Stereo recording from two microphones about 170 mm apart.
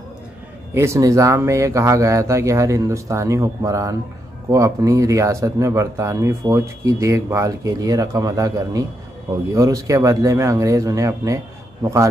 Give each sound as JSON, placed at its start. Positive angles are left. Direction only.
{"t": 0.7, "sound": "speech", "side_deg": -15}